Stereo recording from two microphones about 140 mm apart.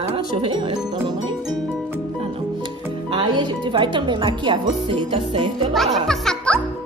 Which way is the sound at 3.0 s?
35° right (ahead or behind).